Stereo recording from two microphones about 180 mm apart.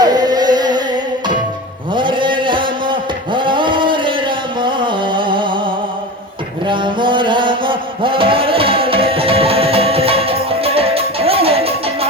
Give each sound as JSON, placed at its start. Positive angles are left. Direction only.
{"t": 0.0, "sound": "music", "side_deg": -20}
{"t": 2.0, "sound": "a sound", "side_deg": -25}
{"t": 6.7, "sound": "music", "side_deg": -25}